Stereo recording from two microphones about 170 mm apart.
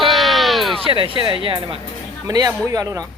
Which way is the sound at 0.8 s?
30° right (ahead or behind).